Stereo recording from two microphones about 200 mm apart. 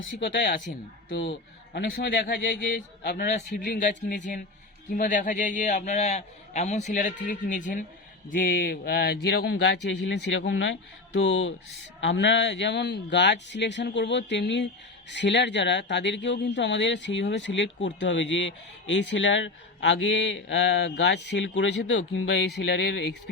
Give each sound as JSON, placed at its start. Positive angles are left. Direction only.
{"t": 0.0, "sound": "a man's voice", "side_deg": 60}
{"t": 1.7, "sound": "a man's voice", "side_deg": 55}